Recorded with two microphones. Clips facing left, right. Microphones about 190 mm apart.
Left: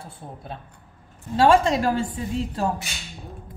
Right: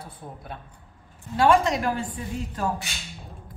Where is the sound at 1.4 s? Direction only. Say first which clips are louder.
Left 2 dB; 25° left (ahead or behind).